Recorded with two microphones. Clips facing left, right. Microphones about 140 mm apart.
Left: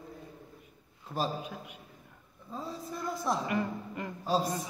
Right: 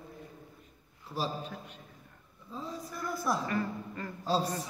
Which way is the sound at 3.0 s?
20° left (ahead or behind).